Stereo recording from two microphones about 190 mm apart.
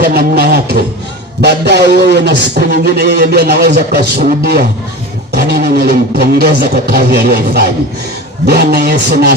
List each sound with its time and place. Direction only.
0.0 s a man's voice: 55° right (ahead or behind)
5.3 s a sound: 55° right (ahead or behind)
8.4 s a man's voice: 55° right (ahead or behind)